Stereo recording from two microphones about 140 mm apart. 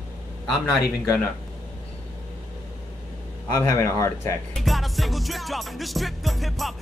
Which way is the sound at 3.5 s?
25° left (ahead or behind).